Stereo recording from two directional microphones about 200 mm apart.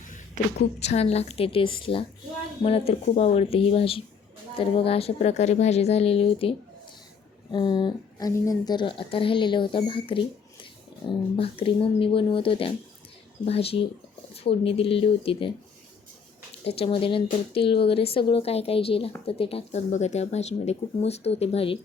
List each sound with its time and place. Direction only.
0.8 s a woman's voice: 30° left (ahead or behind)
7.5 s a woman's voice: 20° left (ahead or behind)
16.6 s a woman's voice: 30° left (ahead or behind)